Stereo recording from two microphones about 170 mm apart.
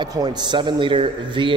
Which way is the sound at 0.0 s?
25° right (ahead or behind).